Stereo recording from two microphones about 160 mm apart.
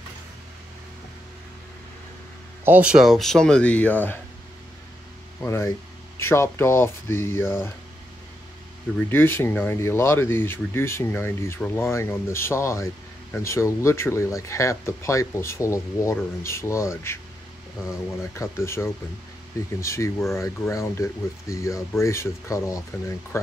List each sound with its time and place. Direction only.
2.6 s speech: 10° right (ahead or behind); by 4.2 s 10° left (ahead or behind)
5.4 s speech: 15° left (ahead or behind)
9.1 s speech: 15° left (ahead or behind)
18.3 s speech: 15° left (ahead or behind)